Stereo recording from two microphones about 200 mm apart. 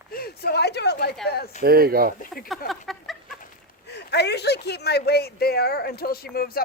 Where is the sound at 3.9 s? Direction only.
55° left (ahead or behind).